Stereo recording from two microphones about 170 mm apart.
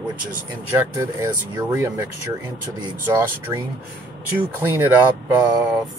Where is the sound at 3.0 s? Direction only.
10° right (ahead or behind).